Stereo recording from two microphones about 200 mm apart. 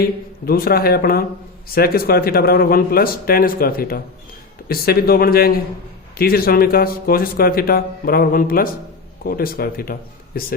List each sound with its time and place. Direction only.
0.4 s speech: 50° left (ahead or behind)